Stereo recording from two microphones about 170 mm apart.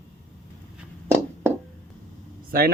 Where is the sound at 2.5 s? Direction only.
60° right (ahead or behind).